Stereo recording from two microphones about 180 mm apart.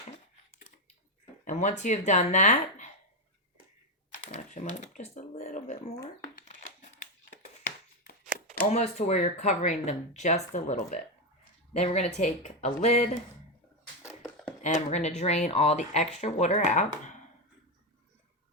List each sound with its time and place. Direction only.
1.5 s speech: 40° left (ahead or behind)
4.1 s speech: 45° left (ahead or behind)
6.3 s crumpling: 50° left (ahead or behind)
8.6 s speech: 40° left (ahead or behind)
14.0 s a sound: 15° left (ahead or behind)
14.6 s speech: 40° left (ahead or behind)